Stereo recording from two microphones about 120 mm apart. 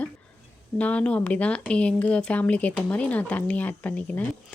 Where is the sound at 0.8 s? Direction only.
10° left (ahead or behind).